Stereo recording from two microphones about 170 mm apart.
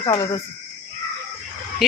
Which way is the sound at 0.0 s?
20° left (ahead or behind).